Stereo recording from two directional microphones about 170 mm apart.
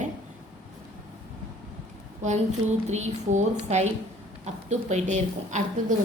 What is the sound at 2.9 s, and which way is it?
A woman's voice, 40° right (ahead or behind).